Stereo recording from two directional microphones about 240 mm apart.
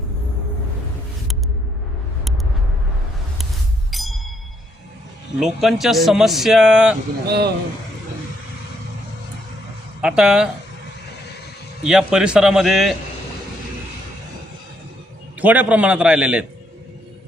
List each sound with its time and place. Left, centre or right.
3.9 s music: centre
5.4 s speech: centre
7.3 s speech: right
10.0 s speech: centre
11.9 s speech: centre
15.4 s speech: centre